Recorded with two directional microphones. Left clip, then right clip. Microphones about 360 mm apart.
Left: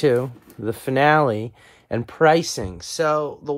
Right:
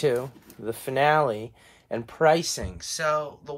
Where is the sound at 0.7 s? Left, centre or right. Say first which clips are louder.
Left 5 dB; left.